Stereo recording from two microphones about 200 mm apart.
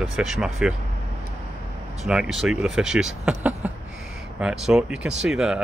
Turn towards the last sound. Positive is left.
turn(degrees=0)  # may be behind; listen again after turning